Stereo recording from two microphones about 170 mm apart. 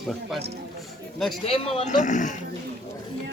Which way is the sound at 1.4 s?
35° left (ahead or behind).